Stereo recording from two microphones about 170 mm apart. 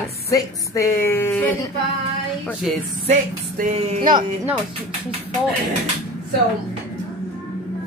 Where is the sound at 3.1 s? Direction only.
45° right (ahead or behind).